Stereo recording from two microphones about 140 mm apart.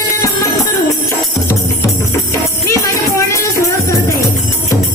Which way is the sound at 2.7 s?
20° left (ahead or behind).